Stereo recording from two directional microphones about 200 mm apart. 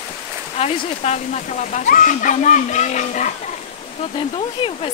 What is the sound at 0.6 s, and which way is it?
Speech, 30° left (ahead or behind).